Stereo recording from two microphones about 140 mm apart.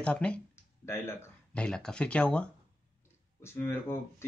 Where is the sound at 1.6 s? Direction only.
5° left (ahead or behind).